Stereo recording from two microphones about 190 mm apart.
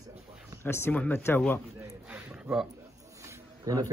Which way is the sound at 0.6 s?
15° left (ahead or behind).